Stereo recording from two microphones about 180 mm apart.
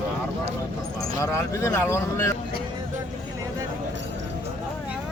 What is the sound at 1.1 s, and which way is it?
Speech, 15° left (ahead or behind).